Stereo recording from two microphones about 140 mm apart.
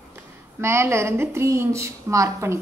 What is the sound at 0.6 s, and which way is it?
A woman's voice, 20° right (ahead or behind).